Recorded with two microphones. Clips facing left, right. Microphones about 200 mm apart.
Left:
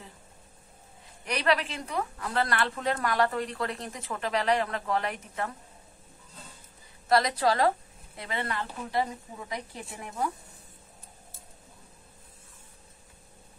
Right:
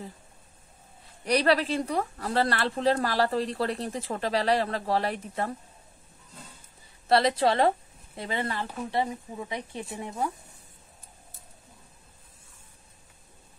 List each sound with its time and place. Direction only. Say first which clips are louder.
1.2 s speech: right 4 dB; 35° right (ahead or behind)
7.1 s speech: right 2 dB; 30° right (ahead or behind)